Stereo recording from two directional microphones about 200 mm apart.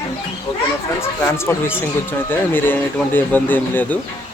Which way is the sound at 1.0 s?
15° left (ahead or behind).